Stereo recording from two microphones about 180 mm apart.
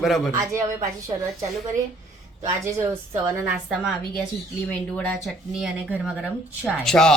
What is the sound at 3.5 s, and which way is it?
Speech, centre (ahead or behind).